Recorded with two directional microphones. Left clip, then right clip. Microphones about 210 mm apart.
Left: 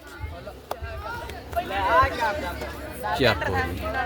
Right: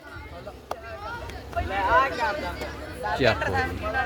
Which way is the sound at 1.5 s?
10° right (ahead or behind).